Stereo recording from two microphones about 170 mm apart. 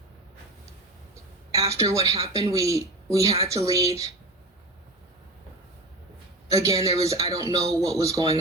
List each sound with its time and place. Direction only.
1.5 s a sound: 20° right (ahead or behind)
1.9 s speech: 20° right (ahead or behind)
6.5 s speech: 20° right (ahead or behind)